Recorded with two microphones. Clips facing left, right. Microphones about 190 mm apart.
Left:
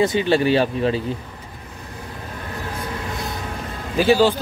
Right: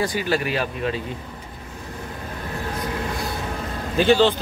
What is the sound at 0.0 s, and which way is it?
Speech, 25° left (ahead or behind).